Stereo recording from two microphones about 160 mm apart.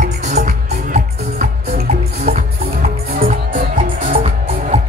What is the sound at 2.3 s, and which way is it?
Music, 55° right (ahead or behind).